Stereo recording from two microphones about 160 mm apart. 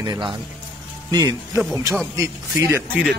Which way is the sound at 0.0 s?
30° right (ahead or behind).